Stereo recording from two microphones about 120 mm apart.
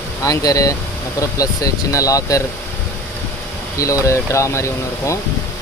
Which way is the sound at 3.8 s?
25° left (ahead or behind).